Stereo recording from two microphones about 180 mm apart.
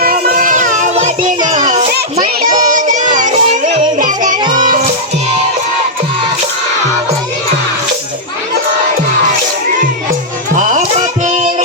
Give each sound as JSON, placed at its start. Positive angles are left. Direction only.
{"t": 0.0, "sound": "child singing", "side_deg": -55}
{"t": 1.6, "sound": "children playing", "side_deg": -45}
{"t": 2.6, "sound": "child singing", "side_deg": -45}
{"t": 4.5, "sound": "music", "side_deg": -50}
{"t": 10.5, "sound": "music", "side_deg": -45}